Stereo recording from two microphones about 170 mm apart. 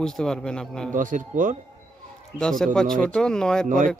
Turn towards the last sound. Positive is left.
turn(degrees=5)  # may be behind; listen again after turning